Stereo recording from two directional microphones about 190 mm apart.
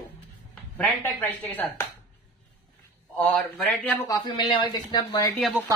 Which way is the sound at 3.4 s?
10° left (ahead or behind).